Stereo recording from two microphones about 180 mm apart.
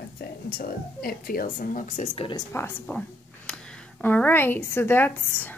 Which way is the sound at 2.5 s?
10° left (ahead or behind).